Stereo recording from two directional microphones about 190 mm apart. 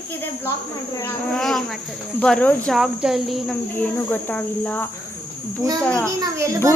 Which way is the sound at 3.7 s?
10° left (ahead or behind).